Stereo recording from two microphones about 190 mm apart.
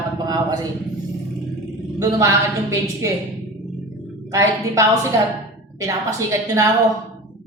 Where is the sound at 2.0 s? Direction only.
15° right (ahead or behind).